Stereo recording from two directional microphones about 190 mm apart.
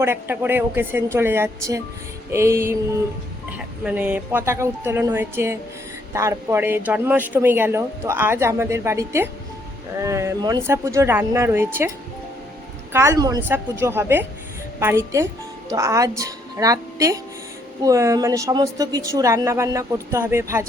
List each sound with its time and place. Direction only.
0.0 s speech: 10° right (ahead or behind)
12.9 s a woman's voice: 15° right (ahead or behind)